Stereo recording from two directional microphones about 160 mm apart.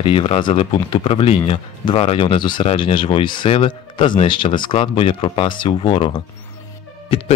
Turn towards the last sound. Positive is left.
turn(degrees=35)  # may be behind; listen again after turning